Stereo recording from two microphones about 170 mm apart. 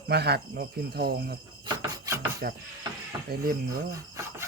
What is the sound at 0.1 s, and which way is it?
Speech, 75° right (ahead or behind).